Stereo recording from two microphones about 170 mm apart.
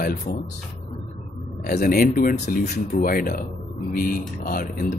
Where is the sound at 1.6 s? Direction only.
60° left (ahead or behind).